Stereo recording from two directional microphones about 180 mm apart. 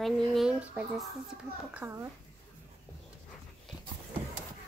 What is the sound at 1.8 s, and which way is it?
Speech, 15° right (ahead or behind).